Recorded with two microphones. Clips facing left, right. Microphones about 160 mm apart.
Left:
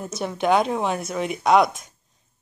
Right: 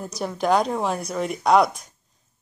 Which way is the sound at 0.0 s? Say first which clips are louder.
Left 1 dB; centre (ahead or behind).